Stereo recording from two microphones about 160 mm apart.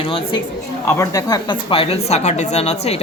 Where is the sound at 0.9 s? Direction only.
20° left (ahead or behind).